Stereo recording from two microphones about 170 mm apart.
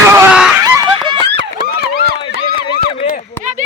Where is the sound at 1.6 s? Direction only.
65° left (ahead or behind).